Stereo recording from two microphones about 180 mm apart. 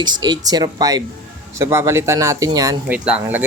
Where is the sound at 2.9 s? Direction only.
10° right (ahead or behind).